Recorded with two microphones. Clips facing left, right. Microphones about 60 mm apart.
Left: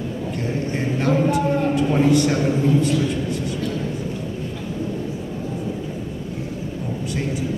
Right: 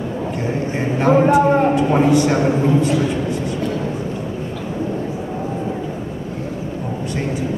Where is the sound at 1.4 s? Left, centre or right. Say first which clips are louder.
Right 6 dB; right.